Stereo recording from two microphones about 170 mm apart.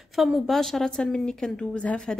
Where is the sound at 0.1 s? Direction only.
Centre (ahead or behind).